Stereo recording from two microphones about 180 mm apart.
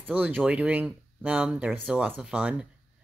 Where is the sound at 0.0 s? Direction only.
10° right (ahead or behind).